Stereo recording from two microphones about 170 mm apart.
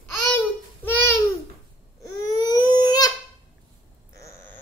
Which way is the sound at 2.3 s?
25° left (ahead or behind).